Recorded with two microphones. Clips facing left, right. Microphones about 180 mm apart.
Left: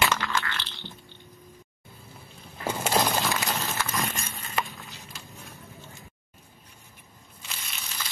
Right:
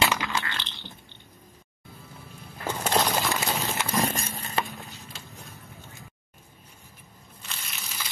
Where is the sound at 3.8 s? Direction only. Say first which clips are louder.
Right 5 dB; 35° right (ahead or behind).